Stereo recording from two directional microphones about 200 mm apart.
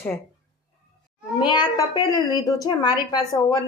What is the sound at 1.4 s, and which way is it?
A woman's voice, 20° left (ahead or behind).